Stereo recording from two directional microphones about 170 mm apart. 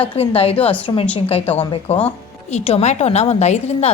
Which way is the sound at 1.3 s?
35° left (ahead or behind).